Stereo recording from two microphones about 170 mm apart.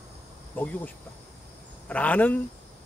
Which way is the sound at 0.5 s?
10° left (ahead or behind).